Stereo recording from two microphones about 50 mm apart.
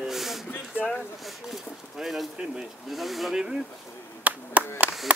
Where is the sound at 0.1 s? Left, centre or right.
Centre.